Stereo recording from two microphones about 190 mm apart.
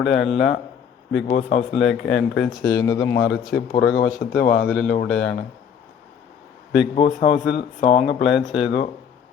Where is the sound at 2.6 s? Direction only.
20° left (ahead or behind).